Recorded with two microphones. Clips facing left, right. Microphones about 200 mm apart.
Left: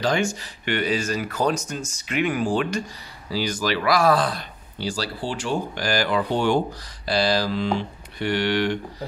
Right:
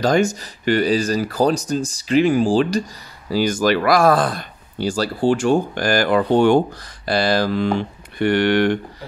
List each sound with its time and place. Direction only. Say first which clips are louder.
0.0 s speech: right 6 dB; 40° right (ahead or behind)
3.3 s speech: right 7 dB; 50° right (ahead or behind)